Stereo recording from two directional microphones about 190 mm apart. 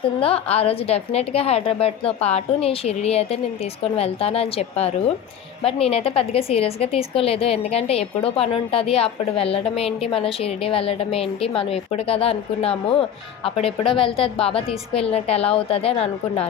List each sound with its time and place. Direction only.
0.2 s a woman's voice: 30° left (ahead or behind)